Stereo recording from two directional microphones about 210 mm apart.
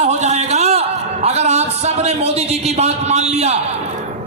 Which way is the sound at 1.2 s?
30° right (ahead or behind).